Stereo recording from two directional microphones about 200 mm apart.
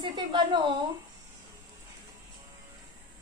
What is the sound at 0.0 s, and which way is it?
Speech, 25° right (ahead or behind).